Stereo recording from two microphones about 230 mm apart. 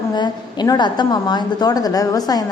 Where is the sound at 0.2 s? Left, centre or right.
Centre.